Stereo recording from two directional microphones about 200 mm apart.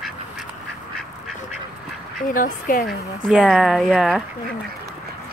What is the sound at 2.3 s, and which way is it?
Speech, 45° left (ahead or behind).